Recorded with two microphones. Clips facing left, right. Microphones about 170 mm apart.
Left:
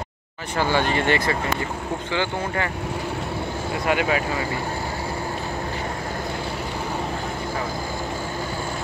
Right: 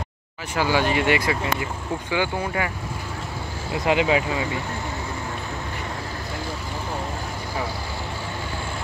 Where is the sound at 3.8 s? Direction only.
20° right (ahead or behind).